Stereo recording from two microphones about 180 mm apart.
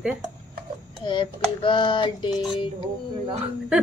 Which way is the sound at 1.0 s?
25° left (ahead or behind).